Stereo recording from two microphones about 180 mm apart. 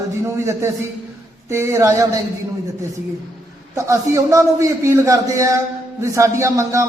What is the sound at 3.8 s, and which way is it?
A man's voice, 15° right (ahead or behind).